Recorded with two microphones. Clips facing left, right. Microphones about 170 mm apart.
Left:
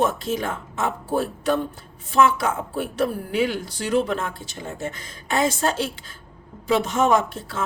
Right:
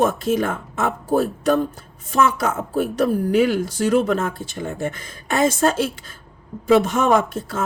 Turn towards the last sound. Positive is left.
turn(degrees=-50)  # may be behind; listen again after turning